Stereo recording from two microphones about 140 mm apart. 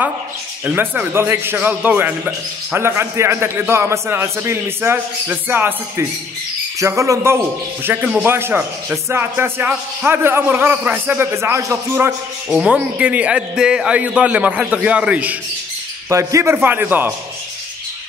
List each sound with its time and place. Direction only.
0.7 s a man's voice: 15° right (ahead or behind)
12.1 s a man's voice: 5° right (ahead or behind)
16.1 s a man's voice: 20° right (ahead or behind)